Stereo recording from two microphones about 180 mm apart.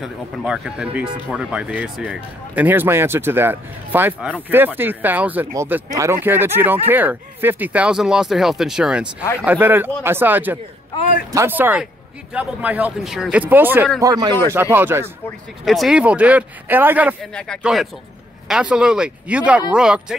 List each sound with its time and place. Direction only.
0.0 s speech: 5° right (ahead or behind)
10.9 s a man's voice: 20° left (ahead or behind)
11.3 s speech: 10° right (ahead or behind)
14.0 s speech: 20° right (ahead or behind)
15.6 s speech: centre (ahead or behind)
17.2 s speech: 5° left (ahead or behind)